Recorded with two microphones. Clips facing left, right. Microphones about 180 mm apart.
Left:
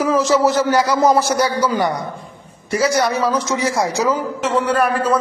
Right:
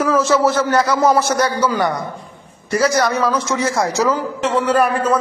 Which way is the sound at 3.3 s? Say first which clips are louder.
Even; 15° left (ahead or behind).